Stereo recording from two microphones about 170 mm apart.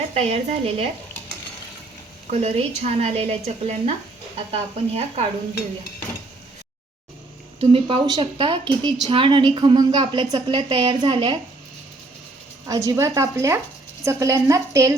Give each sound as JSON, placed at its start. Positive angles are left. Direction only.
{"t": 0.1, "sound": "a woman's voice", "side_deg": -35}
{"t": 2.4, "sound": "a woman's voice", "side_deg": -40}
{"t": 7.6, "sound": "speech", "side_deg": -30}
{"t": 12.6, "sound": "a woman's voice", "side_deg": -20}